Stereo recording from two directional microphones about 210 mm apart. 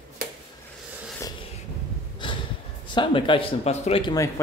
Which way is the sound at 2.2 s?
20° left (ahead or behind).